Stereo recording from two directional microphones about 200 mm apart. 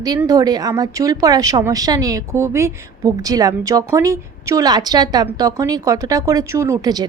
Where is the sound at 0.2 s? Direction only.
15° right (ahead or behind).